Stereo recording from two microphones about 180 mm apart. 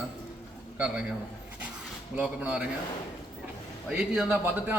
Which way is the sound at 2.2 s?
5° right (ahead or behind).